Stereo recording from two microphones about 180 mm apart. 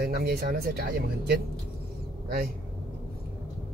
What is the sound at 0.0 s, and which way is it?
Speech, 60° right (ahead or behind).